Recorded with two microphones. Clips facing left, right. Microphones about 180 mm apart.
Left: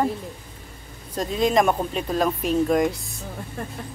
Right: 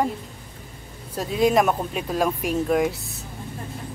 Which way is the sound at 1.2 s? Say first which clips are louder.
Right 1 dB; 5° right (ahead or behind).